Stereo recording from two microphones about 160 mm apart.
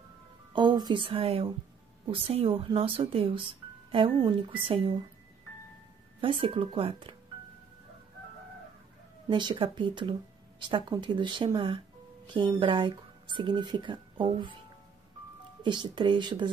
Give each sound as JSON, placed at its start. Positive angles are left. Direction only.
{"t": 0.5, "sound": "a woman's voice", "side_deg": -30}
{"t": 6.2, "sound": "speech", "side_deg": -35}
{"t": 9.3, "sound": "speech", "side_deg": -30}
{"t": 15.6, "sound": "speech", "side_deg": -30}